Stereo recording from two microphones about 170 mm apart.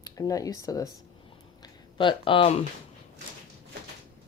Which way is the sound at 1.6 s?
30° left (ahead or behind).